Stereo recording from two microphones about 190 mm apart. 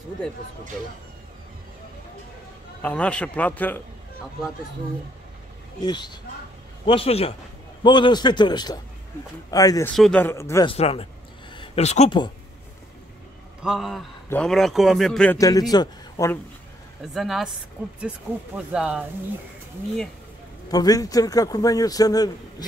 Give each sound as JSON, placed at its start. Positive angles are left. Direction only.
{"t": 2.8, "sound": "a man's voice", "side_deg": 5}
{"t": 5.8, "sound": "a man's voice", "side_deg": 25}
{"t": 9.9, "sound": "a man's voice", "side_deg": 0}
{"t": 10.2, "sound": "a man's voice", "side_deg": 15}
{"t": 10.7, "sound": "a man's voice", "side_deg": 30}
{"t": 11.5, "sound": "a sound", "side_deg": 30}
{"t": 13.6, "sound": "a man's voice", "side_deg": 0}
{"t": 15.3, "sound": "a man's voice", "side_deg": 20}
{"t": 17.0, "sound": "a man's voice", "side_deg": 0}
{"t": 20.6, "sound": "a man's voice", "side_deg": 20}